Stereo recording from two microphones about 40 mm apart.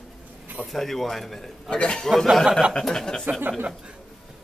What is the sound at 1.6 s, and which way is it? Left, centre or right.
Speech, left.